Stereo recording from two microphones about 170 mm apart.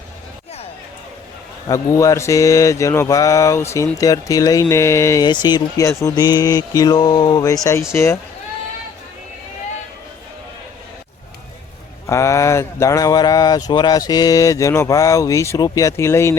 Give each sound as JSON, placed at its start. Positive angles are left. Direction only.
{"t": 1.6, "sound": "mantra", "side_deg": 20}
{"t": 7.9, "sound": "speech", "side_deg": 15}
{"t": 12.0, "sound": "mantra", "side_deg": 15}